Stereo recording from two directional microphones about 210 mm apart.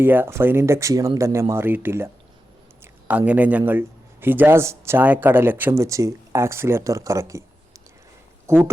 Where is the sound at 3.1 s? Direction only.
5° right (ahead or behind).